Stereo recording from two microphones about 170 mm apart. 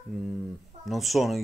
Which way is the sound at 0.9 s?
Centre (ahead or behind).